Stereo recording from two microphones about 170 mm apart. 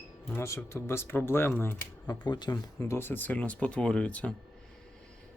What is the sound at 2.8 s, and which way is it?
Speech, 15° left (ahead or behind).